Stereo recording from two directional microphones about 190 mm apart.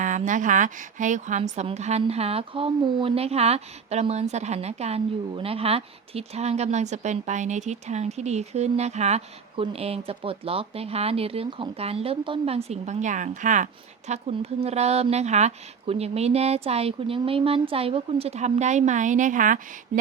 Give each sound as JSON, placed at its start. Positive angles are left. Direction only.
{"t": 0.0, "sound": "a woman's voice", "side_deg": -40}